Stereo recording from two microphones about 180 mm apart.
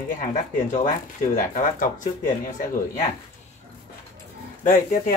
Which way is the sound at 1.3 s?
50° left (ahead or behind).